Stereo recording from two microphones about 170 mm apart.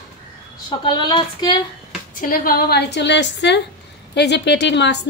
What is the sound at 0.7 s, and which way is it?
Speech, 25° left (ahead or behind).